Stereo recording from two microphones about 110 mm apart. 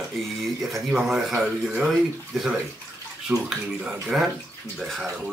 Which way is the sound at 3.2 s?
5° right (ahead or behind).